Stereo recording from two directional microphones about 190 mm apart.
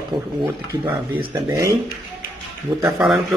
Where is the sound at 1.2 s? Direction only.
20° right (ahead or behind).